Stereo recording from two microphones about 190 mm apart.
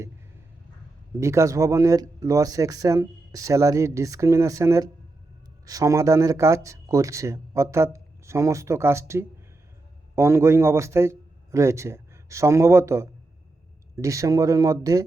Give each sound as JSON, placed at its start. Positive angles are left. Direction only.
{"t": 1.2, "sound": "a man's voice", "side_deg": -15}